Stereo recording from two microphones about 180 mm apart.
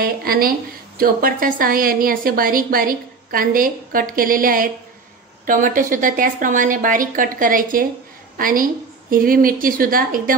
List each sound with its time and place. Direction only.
0.0 s a woman's voice: 55° right (ahead or behind)